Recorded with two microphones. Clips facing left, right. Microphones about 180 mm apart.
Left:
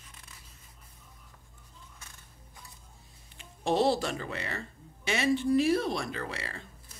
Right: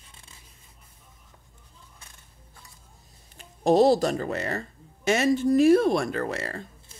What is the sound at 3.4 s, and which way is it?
Speech, 40° right (ahead or behind).